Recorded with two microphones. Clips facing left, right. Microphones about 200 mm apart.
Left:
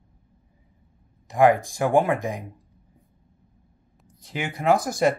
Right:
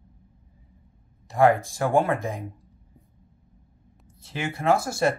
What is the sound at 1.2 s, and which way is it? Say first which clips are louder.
Speech: left 1 dB; 15° left (ahead or behind).